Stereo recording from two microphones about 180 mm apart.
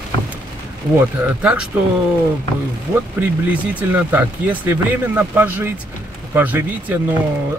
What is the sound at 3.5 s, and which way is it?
Speech, 10° right (ahead or behind).